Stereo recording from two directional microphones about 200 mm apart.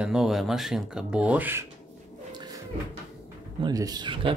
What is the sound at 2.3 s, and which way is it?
Cupboard open or close, 20° right (ahead or behind).